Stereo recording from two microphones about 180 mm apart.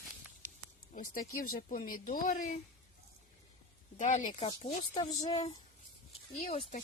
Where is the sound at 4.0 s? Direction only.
45° left (ahead or behind).